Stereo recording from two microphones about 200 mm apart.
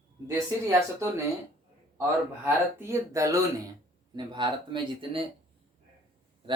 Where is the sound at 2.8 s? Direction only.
15° right (ahead or behind).